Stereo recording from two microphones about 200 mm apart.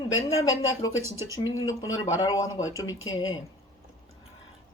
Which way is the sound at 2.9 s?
85° left.